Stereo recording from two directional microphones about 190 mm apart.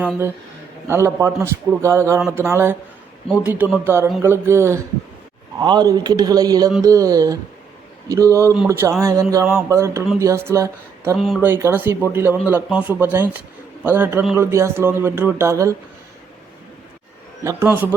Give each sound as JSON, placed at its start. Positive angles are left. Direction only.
{"t": 0.0, "sound": "a man's voice", "side_deg": -10}
{"t": 11.2, "sound": "speech", "side_deg": 0}
{"t": 11.4, "sound": "speech", "side_deg": -15}
{"t": 17.4, "sound": "speech", "side_deg": -10}